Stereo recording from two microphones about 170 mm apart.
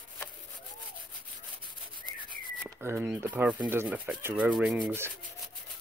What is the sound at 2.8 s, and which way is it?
Speech, 10° right (ahead or behind).